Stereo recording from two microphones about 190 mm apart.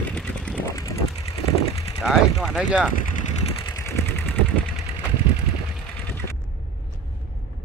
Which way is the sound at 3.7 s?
15° left (ahead or behind).